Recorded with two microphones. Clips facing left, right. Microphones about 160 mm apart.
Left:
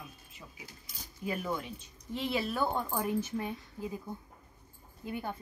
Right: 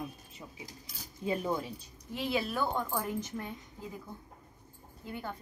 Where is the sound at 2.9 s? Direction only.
10° left (ahead or behind).